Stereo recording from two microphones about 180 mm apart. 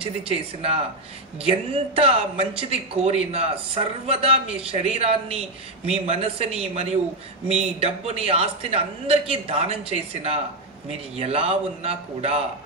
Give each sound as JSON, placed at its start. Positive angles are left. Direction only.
{"t": 0.0, "sound": "speech", "side_deg": -30}